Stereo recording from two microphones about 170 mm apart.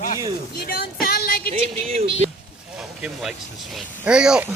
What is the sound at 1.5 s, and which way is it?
Speech, 35° right (ahead or behind).